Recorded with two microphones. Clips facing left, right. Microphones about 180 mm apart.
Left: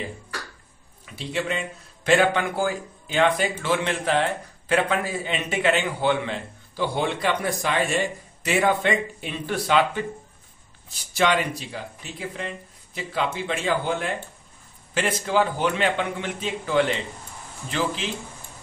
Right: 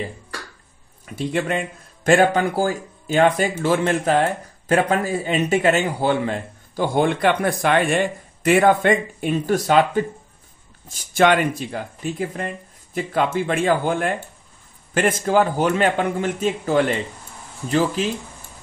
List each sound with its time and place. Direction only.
1.0 s speech: 50° right (ahead or behind)